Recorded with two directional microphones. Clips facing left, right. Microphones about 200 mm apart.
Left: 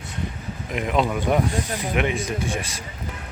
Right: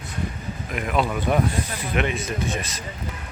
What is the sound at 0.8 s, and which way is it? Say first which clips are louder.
Speech: left 2 dB; 20° left (ahead or behind).